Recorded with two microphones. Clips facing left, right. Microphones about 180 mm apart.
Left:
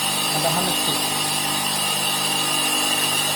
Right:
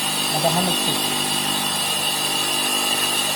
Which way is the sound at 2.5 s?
Centre (ahead or behind).